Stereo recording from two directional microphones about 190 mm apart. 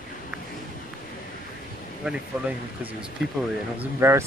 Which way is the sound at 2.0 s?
5° right (ahead or behind).